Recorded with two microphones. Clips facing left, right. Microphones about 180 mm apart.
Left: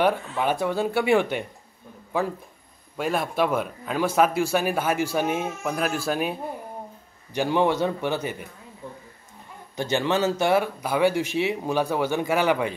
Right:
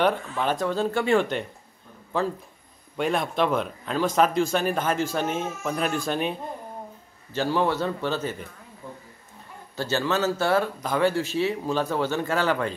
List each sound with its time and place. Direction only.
0.4 s a man's voice: 10° left (ahead or behind)
7.3 s a man's voice: 15° left (ahead or behind)
9.8 s a man's voice: 15° left (ahead or behind)